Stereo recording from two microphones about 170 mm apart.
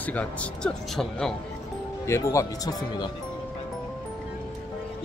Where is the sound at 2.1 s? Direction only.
15° left (ahead or behind).